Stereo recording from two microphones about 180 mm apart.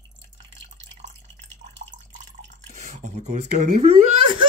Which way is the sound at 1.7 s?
85° right.